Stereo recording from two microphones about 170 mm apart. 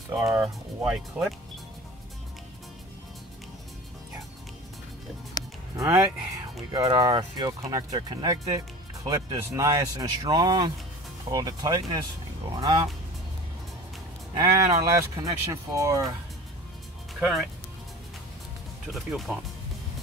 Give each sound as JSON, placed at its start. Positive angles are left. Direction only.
{"t": 0.1, "sound": "speech", "side_deg": -15}
{"t": 0.8, "sound": "speech", "side_deg": -5}
{"t": 5.4, "sound": "music", "side_deg": 20}
{"t": 5.8, "sound": "speech", "side_deg": -20}
{"t": 14.7, "sound": "speech", "side_deg": -20}
{"t": 17.1, "sound": "speech", "side_deg": 0}
{"t": 18.9, "sound": "speech", "side_deg": 0}